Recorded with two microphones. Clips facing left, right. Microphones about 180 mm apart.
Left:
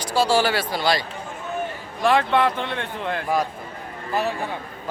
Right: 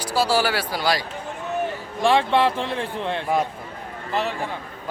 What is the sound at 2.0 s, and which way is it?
Speech, 30° right (ahead or behind).